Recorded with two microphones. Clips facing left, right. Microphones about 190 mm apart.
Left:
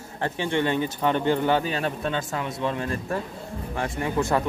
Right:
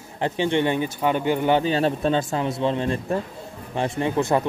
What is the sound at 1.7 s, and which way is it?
A man's voice, 30° right (ahead or behind).